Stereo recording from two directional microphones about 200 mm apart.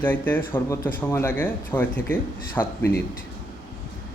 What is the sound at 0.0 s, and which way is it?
Speech, 10° left (ahead or behind).